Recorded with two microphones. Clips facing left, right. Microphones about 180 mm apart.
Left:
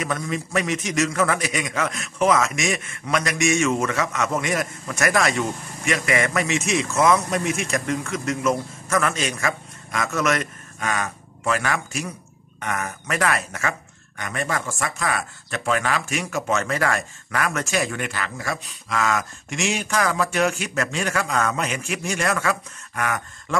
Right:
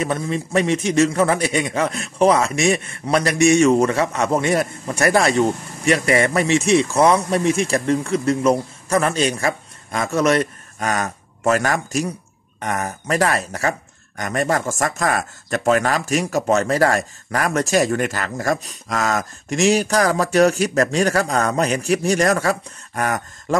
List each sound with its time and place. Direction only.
0.0 s a man's voice: 30° right (ahead or behind)